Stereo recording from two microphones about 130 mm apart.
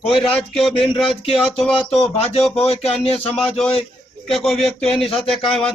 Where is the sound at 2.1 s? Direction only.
50° left (ahead or behind).